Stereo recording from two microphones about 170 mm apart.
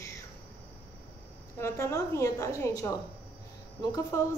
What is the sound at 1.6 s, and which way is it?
A woman's voice, 15° left (ahead or behind).